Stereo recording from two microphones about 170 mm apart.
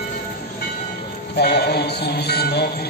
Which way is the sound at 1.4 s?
70° left (ahead or behind).